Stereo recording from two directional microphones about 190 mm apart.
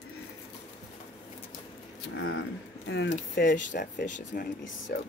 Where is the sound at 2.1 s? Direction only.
90° left.